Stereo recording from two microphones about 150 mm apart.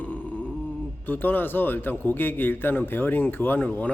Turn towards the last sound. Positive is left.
turn(degrees=10)  # may be behind; listen again after turning